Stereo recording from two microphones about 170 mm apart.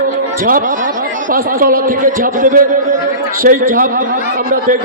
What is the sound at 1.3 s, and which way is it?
Speech, 55° right (ahead or behind).